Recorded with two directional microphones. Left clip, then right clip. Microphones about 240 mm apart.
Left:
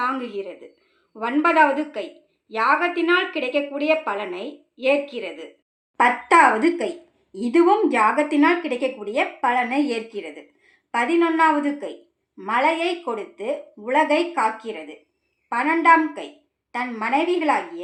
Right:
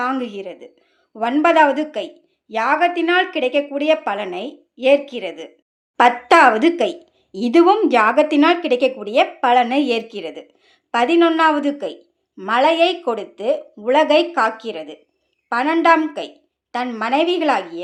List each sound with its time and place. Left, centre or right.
0.0 s a woman's voice: right
6.0 s speech: right